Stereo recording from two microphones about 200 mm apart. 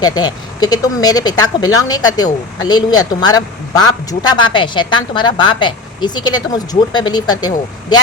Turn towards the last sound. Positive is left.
turn(degrees=20)  # may be behind; listen again after turning